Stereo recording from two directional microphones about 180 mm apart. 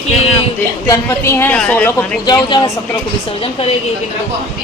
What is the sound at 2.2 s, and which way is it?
Speech, 25° left (ahead or behind).